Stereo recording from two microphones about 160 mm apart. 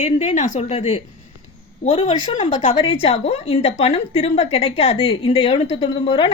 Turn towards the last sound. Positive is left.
turn(degrees=35)  # may be behind; listen again after turning